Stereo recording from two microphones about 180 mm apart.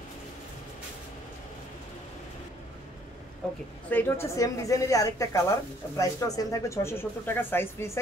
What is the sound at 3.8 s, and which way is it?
Speech, 10° left (ahead or behind).